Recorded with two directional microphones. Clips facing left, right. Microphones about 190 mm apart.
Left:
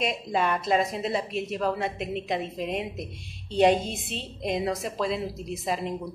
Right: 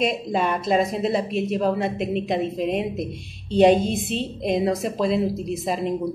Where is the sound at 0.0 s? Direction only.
30° right (ahead or behind).